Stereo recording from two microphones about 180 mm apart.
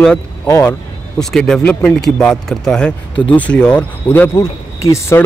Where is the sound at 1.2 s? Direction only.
5° left (ahead or behind).